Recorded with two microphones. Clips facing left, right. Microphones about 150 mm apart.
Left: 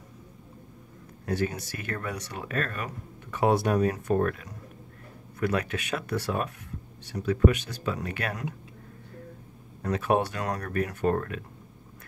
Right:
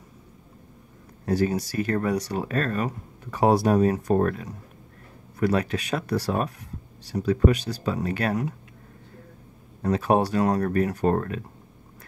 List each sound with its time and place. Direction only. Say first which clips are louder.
1.2 s speech: right 6 dB; 35° right (ahead or behind)
9.8 s speech: right 4 dB; 35° right (ahead or behind)